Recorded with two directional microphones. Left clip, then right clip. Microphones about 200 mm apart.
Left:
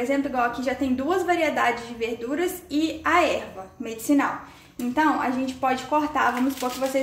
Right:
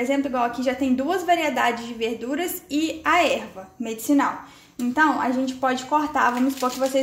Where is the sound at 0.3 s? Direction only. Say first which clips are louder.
Right 1 dB; 30° right (ahead or behind).